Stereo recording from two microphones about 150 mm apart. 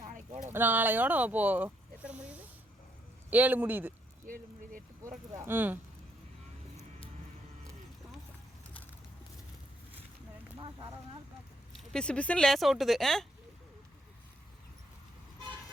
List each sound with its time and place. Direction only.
0.0 s a sound: 60° right (ahead or behind)
0.5 s speech: 10° right (ahead or behind)
4.3 s speech: 65° right (ahead or behind)
5.4 s speech: 15° right (ahead or behind)
11.7 s speech: 5° left (ahead or behind)